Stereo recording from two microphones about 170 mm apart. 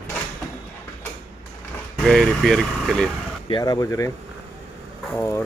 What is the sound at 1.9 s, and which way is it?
Speech, centre (ahead or behind).